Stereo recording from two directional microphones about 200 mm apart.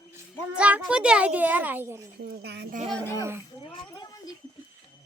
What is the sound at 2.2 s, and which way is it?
Speech, 55° right (ahead or behind).